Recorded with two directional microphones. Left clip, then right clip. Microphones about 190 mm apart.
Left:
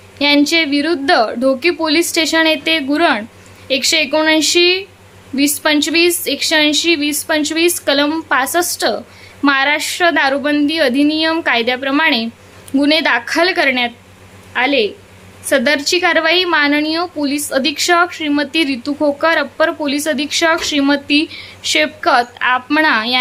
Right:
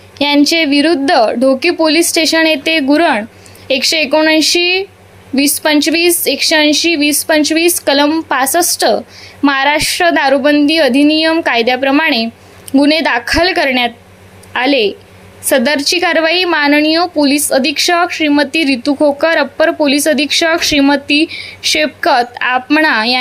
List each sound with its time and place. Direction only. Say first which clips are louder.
0.2 s a woman's voice: right 2 dB; 20° right (ahead or behind)